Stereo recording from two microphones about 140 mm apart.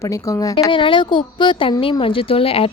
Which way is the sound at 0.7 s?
35° left (ahead or behind).